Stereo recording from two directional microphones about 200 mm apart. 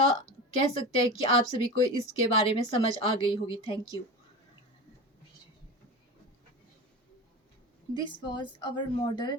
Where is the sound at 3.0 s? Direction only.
25° left (ahead or behind).